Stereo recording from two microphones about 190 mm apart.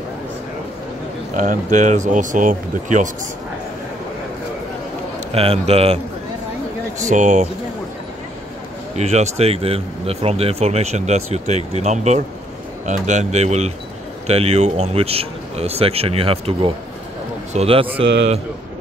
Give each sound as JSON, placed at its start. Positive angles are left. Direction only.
{"t": 1.3, "sound": "speech", "side_deg": -45}
{"t": 5.3, "sound": "speech", "side_deg": -30}
{"t": 7.1, "sound": "speech", "side_deg": -40}
{"t": 8.9, "sound": "a man's voice", "side_deg": -35}